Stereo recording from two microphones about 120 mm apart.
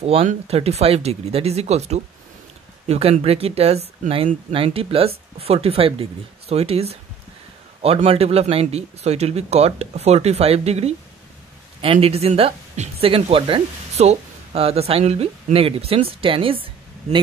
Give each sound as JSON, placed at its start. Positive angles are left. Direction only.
{"t": 0.0, "sound": "speech", "side_deg": -55}